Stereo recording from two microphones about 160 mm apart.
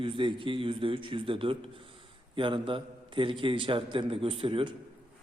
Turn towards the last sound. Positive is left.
turn(degrees=-35)  # may be behind; listen again after turning